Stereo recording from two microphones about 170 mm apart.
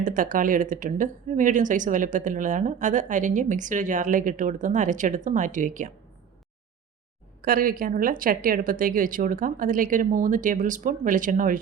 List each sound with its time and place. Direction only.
0.0 s speech: 50° right (ahead or behind)
7.4 s speech: 55° right (ahead or behind)